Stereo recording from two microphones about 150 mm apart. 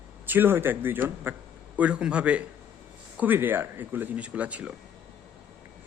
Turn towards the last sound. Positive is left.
turn(degrees=-10)  # may be behind; listen again after turning